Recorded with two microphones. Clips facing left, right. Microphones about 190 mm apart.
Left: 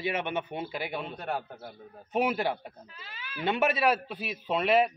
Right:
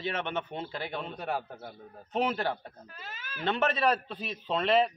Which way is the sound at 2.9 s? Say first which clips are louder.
Even; 45° right (ahead or behind).